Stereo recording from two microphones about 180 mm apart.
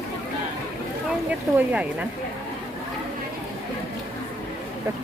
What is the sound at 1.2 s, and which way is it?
Speech, 10° right (ahead or behind).